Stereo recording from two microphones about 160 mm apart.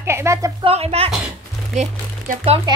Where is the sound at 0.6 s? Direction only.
40° right (ahead or behind).